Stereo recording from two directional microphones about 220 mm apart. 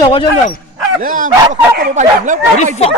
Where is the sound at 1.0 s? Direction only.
40° right (ahead or behind).